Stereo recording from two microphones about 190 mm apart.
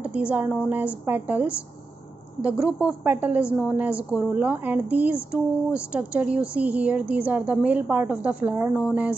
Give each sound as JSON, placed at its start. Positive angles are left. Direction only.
{"t": 0.0, "sound": "a woman's voice", "side_deg": -5}